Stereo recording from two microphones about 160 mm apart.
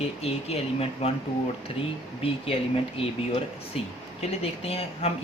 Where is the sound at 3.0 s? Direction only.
40° left (ahead or behind).